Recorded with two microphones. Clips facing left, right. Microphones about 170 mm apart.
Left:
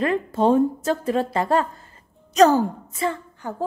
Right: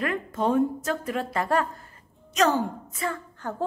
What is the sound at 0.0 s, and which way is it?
A woman's voice, 30° left (ahead or behind).